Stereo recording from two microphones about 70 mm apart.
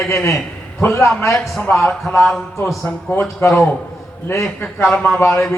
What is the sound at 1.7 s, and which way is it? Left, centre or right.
Speech, left.